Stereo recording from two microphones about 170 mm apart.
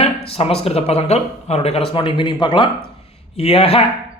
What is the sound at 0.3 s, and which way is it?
Speech, 35° left (ahead or behind).